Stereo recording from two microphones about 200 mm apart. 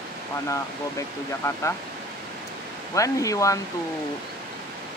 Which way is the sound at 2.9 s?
15° left (ahead or behind).